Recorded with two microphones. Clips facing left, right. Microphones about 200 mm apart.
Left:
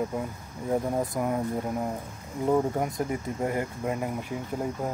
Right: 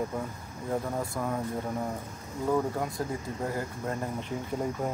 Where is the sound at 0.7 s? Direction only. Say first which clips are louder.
Left 4 dB; 20° left (ahead or behind).